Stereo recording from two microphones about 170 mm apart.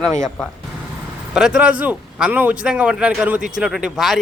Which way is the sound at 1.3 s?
5° right (ahead or behind).